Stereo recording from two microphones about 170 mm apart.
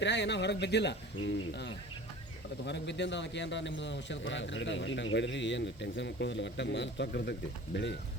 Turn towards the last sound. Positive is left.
turn(degrees=85)